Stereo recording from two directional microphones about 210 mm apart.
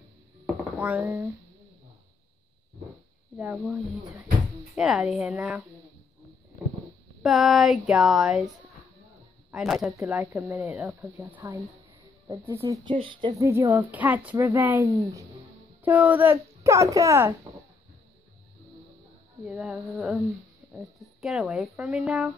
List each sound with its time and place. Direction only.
0.7 s a child's voice: 5° right (ahead or behind)
3.3 s a child's voice: 5° right (ahead or behind)
7.2 s a child's voice: centre (ahead or behind)
19.4 s speech: 5° right (ahead or behind)